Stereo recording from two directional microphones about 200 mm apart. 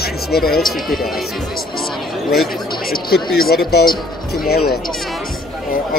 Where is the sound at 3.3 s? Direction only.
50° left (ahead or behind).